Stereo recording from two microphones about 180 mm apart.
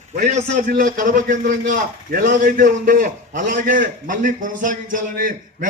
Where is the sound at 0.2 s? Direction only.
40° right (ahead or behind).